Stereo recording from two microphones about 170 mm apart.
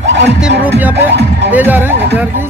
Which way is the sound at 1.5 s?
10° right (ahead or behind).